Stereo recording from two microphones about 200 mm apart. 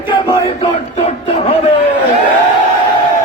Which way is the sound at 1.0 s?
30° left (ahead or behind).